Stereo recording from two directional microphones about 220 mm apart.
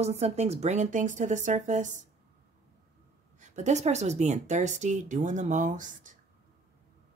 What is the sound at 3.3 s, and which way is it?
Speech, 35° right (ahead or behind).